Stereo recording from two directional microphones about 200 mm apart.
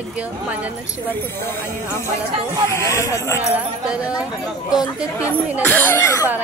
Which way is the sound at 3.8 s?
5° right (ahead or behind).